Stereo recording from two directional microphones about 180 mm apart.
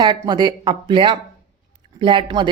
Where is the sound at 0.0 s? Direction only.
25° right (ahead or behind).